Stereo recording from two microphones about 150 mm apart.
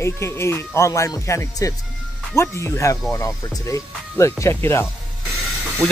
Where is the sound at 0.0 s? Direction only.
20° left (ahead or behind).